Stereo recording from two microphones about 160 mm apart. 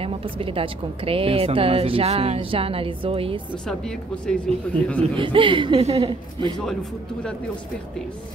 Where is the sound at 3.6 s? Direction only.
5° left (ahead or behind).